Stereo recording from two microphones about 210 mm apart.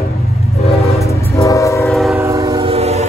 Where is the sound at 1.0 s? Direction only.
15° left (ahead or behind).